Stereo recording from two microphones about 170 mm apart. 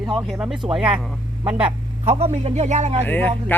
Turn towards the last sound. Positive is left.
turn(degrees=10)  # may be behind; listen again after turning